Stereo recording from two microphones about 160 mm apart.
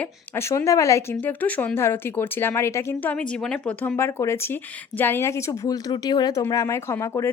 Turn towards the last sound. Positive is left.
turn(degrees=20)  # may be behind; listen again after turning